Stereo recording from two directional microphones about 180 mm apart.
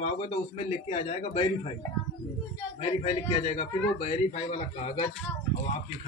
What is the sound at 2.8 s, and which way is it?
Speech, 35° left (ahead or behind).